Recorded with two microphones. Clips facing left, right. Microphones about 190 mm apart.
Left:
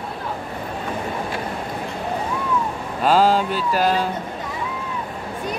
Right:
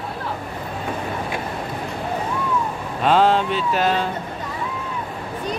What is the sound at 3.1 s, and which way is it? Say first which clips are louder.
Speech: even; 5° left (ahead or behind).